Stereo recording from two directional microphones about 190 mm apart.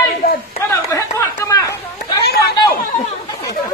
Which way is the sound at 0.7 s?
15° left (ahead or behind).